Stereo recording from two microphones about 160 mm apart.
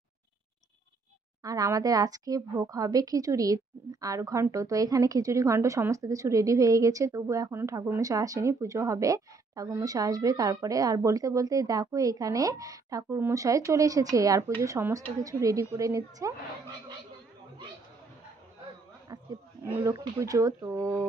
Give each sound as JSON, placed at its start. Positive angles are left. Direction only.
{"t": 1.4, "sound": "a woman's voice", "side_deg": -20}
{"t": 19.6, "sound": "a woman's voice", "side_deg": -20}